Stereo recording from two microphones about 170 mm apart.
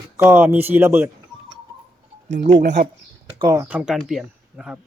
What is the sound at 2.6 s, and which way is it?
Speech, 50° right (ahead or behind).